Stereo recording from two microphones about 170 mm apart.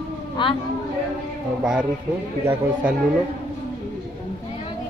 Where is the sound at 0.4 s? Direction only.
25° left (ahead or behind).